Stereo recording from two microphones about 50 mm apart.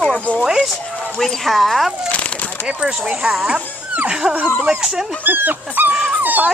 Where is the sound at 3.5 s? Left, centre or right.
Right.